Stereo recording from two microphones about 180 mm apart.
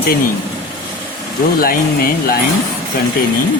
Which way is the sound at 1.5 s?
55° left (ahead or behind).